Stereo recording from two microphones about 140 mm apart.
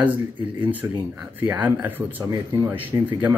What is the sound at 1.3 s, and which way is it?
Speech, 10° right (ahead or behind).